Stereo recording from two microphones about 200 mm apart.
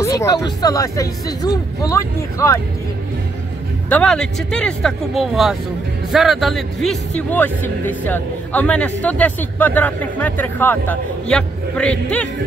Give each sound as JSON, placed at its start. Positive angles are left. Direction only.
{"t": 0.0, "sound": "speech", "side_deg": 15}
{"t": 3.9, "sound": "speech", "side_deg": 5}